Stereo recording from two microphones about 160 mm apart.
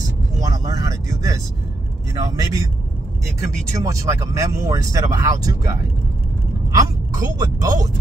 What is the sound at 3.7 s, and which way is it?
Speech, 20° right (ahead or behind).